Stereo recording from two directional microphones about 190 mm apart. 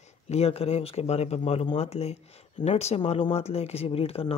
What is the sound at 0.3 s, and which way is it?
Speech, 35° left (ahead or behind).